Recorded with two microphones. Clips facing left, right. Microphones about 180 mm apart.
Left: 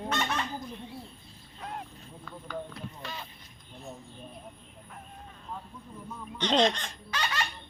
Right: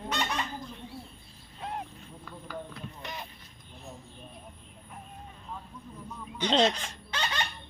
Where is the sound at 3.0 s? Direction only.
20° right (ahead or behind).